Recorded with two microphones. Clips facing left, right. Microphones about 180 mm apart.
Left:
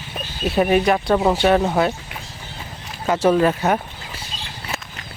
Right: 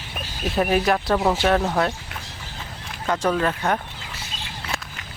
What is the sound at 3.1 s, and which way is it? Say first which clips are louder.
Speech: left 6 dB; 10° left (ahead or behind).